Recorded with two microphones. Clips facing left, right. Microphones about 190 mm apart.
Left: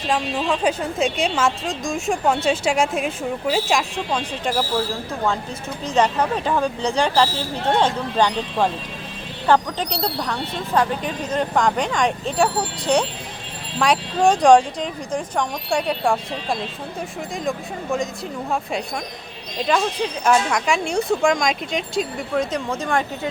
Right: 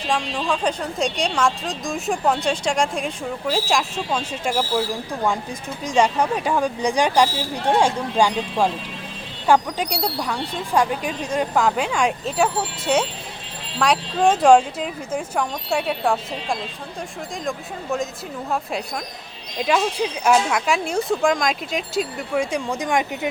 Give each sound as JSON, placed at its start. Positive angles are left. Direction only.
{"t": 0.1, "sound": "a woman's voice", "side_deg": 5}
{"t": 19.6, "sound": "a woman's voice", "side_deg": -5}